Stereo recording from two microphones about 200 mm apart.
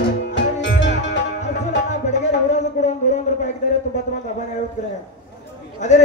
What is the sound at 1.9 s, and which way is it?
Music, 35° left (ahead or behind).